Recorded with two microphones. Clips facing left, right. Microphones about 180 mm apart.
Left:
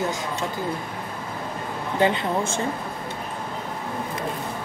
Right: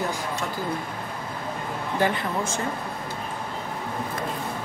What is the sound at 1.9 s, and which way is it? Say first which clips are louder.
Speech: left 3 dB; 20° left (ahead or behind).